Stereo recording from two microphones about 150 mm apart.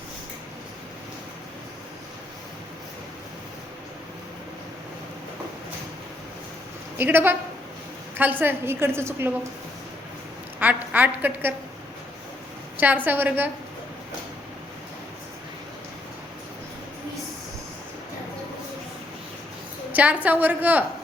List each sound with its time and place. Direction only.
7.0 s a woman's voice: 15° right (ahead or behind)
10.6 s a woman's voice: 10° right (ahead or behind)
12.7 s a woman's voice: 10° right (ahead or behind)
19.9 s a woman's voice: 10° right (ahead or behind)